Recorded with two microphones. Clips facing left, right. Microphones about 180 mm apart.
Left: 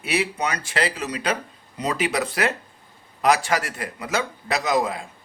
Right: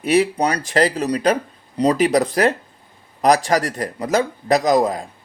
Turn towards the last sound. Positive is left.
turn(degrees=-40)  # may be behind; listen again after turning